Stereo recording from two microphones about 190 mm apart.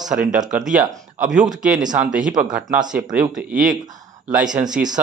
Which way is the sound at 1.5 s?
5° right (ahead or behind).